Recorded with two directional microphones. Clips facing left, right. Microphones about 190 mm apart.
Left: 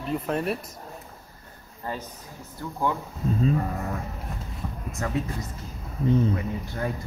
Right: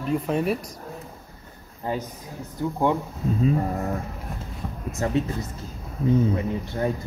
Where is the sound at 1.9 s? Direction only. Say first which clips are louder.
Right 5 dB; 15° right (ahead or behind).